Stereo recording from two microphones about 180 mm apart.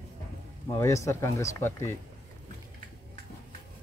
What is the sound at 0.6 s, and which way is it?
Speech, 15° left (ahead or behind).